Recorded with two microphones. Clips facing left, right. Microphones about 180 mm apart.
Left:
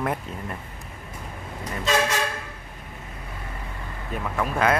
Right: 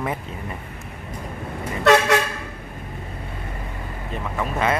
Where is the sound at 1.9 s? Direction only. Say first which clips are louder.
Right 8 dB; 70° right (ahead or behind).